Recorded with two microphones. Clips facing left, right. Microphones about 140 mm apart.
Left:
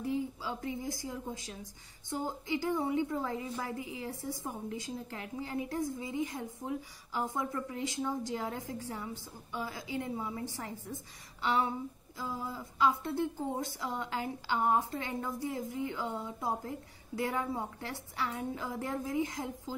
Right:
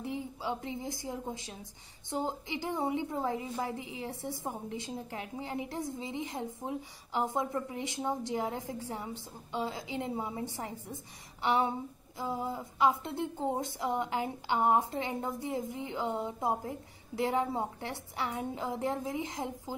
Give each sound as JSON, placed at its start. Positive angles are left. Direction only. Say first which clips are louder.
{"t": 0.0, "sound": "a woman's voice", "louder": "left 2 dB", "side_deg": -20}